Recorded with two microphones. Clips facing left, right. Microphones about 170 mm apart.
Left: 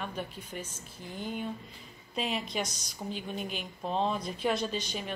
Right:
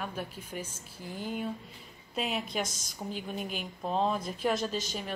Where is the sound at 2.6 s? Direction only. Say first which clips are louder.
Even; 50° right (ahead or behind).